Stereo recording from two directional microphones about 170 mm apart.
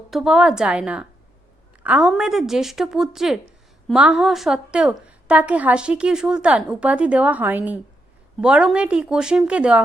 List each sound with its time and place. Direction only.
0.1 s a woman's voice: centre (ahead or behind)